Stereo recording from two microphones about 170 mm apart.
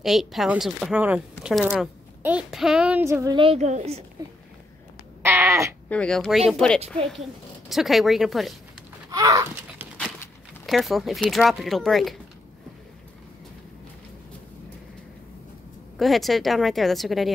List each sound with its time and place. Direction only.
0.0 s speech: centre (ahead or behind)
3.3 s a woman's voice: 35° right (ahead or behind)
5.2 s cat: 15° right (ahead or behind)
5.9 s speech: 5° left (ahead or behind)
7.7 s speech: centre (ahead or behind)
9.1 s a sound: 20° right (ahead or behind)
10.7 s speech: centre (ahead or behind)
16.0 s speech: centre (ahead or behind)